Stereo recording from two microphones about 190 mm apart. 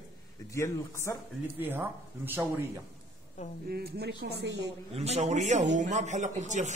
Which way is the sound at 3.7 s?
55° right (ahead or behind).